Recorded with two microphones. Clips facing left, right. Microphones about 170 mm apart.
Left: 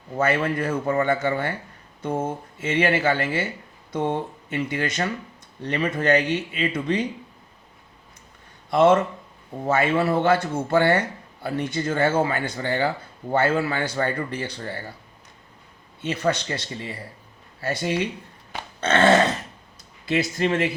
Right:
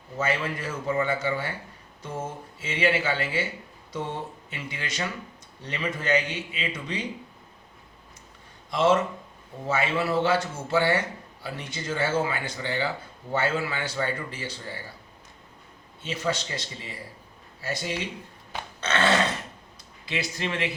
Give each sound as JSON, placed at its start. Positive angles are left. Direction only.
{"t": 0.2, "sound": "a man's voice", "side_deg": 60}
{"t": 8.7, "sound": "a man's voice", "side_deg": 55}
{"t": 16.0, "sound": "a man's voice", "side_deg": 60}
{"t": 18.8, "sound": "dog", "side_deg": 50}
{"t": 20.1, "sound": "speech", "side_deg": 50}